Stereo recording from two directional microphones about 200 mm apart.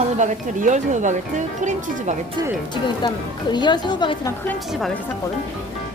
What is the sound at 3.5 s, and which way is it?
A woman's voice, 20° left (ahead or behind).